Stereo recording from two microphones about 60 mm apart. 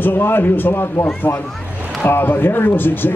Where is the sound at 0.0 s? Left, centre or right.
Left.